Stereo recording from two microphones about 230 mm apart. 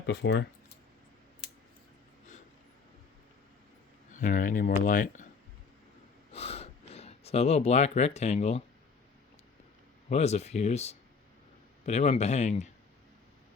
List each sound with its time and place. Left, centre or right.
0.0 s speech: left
4.2 s speech: left
6.3 s gasp: left
10.1 s speech: left